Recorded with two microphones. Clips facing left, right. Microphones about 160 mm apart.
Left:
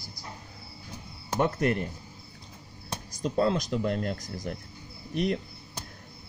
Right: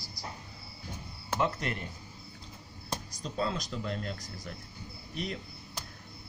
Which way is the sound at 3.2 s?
50° left (ahead or behind).